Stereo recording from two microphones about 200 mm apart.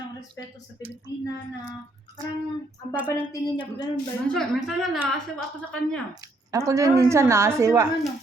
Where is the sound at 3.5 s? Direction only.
25° left (ahead or behind).